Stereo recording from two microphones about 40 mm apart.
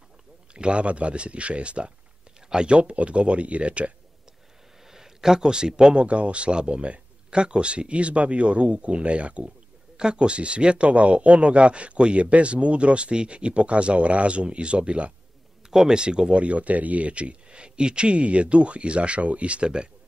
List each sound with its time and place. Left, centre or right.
0.5 s speech: right
4.8 s speech: centre; by 9.5 s right
9.9 s speech: right
15.7 s speech: centre